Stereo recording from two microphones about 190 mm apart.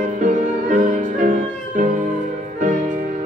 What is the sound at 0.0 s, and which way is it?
Music, 40° right (ahead or behind).